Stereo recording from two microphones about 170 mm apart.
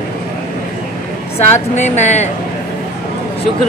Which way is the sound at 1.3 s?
40° left (ahead or behind).